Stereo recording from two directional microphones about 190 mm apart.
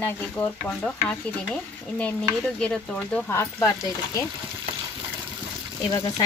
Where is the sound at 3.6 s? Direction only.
20° left (ahead or behind).